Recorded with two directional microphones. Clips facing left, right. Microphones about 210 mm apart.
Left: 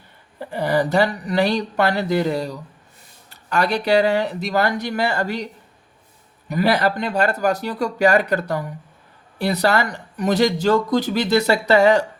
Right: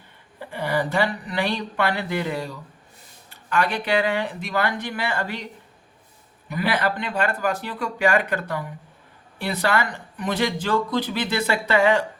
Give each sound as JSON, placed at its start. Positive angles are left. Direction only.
{"t": 0.3, "sound": "speech", "side_deg": 40}
{"t": 6.5, "sound": "speech", "side_deg": 40}